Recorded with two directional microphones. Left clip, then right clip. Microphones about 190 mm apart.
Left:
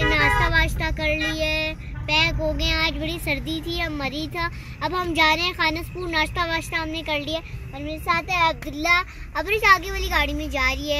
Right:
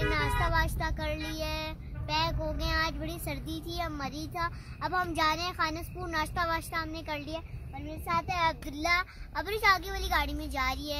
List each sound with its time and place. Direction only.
0.0 s child singing: 15° right (ahead or behind)
3.0 s a child's voice: 15° right (ahead or behind)
8.3 s speech: 30° right (ahead or behind)